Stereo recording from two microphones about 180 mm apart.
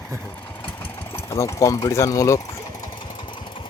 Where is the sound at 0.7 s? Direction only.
10° left (ahead or behind).